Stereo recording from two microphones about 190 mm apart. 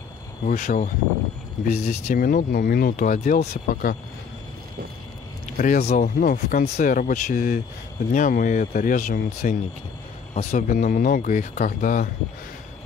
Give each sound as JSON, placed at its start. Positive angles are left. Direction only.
{"t": 0.5, "sound": "speech", "side_deg": 45}
{"t": 2.1, "sound": "speech", "side_deg": 50}
{"t": 5.6, "sound": "speech", "side_deg": 40}